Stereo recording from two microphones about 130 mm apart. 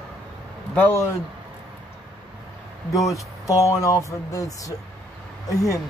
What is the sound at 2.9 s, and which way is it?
Speech, 25° left (ahead or behind).